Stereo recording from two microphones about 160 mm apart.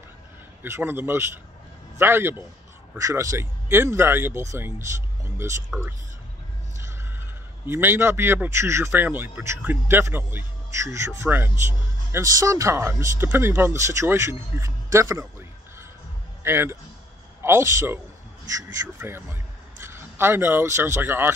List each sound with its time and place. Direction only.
0.6 s speech: 15° right (ahead or behind)
5.7 s speech: centre (ahead or behind)
7.6 s speech: 15° right (ahead or behind)
16.4 s speech: 15° right (ahead or behind)